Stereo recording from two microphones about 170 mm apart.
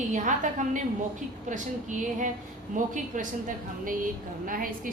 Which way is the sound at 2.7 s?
50° right (ahead or behind).